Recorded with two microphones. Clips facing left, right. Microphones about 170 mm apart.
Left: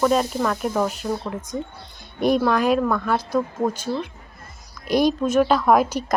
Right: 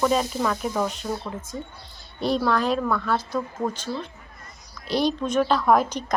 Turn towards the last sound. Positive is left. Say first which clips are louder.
# left 2 dB
turn(degrees=10)  # may be behind; listen again after turning